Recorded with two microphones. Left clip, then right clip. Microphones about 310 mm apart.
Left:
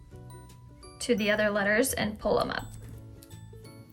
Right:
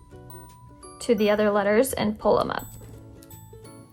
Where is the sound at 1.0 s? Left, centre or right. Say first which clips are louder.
Right 5 dB; centre.